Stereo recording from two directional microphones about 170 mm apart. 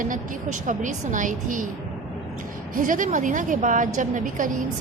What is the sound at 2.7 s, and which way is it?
A woman's voice, 50° right (ahead or behind).